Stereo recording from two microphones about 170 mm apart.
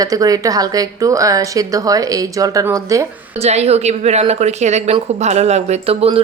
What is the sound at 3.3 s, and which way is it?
A woman's voice, 40° right (ahead or behind).